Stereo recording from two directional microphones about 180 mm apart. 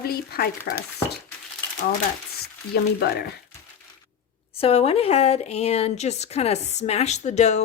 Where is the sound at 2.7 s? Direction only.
65° left (ahead or behind).